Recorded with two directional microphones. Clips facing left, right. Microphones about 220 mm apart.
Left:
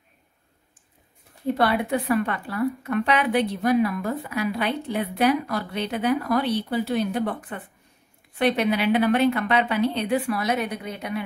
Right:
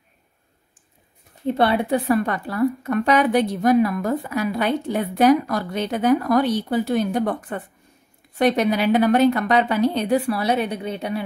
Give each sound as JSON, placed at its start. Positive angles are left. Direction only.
{"t": 1.6, "sound": "a woman's voice", "side_deg": -30}